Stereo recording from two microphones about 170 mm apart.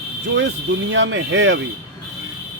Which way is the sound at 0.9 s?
90° right.